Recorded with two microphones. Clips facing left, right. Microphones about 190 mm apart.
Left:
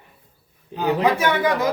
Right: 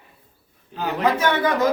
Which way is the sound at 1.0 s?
10° left (ahead or behind).